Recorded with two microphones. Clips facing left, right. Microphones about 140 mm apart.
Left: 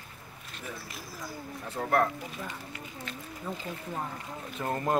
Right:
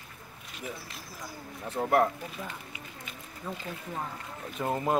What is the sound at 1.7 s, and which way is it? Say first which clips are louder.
Speech: right 2 dB; 20° right (ahead or behind).